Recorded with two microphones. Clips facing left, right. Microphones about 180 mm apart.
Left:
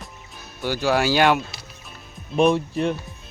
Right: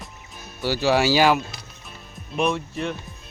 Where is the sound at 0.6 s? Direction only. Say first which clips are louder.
Right 1 dB; 5° right (ahead or behind).